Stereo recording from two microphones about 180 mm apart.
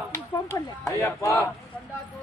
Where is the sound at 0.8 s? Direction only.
15° left (ahead or behind).